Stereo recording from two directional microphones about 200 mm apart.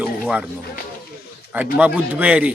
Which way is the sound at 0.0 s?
5° right (ahead or behind).